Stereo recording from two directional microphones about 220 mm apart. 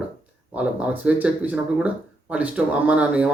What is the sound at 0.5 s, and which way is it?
Speech, 5° right (ahead or behind).